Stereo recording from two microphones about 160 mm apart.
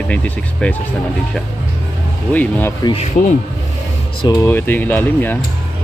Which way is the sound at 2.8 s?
35° left (ahead or behind).